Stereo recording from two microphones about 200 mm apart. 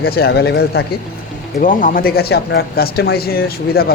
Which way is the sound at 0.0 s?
50° left (ahead or behind).